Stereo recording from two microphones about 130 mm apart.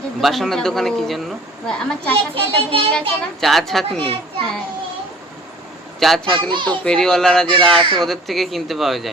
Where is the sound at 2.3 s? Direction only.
45° right (ahead or behind).